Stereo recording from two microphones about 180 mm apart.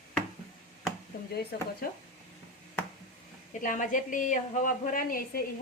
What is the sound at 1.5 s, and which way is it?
Speech, 65° left (ahead or behind).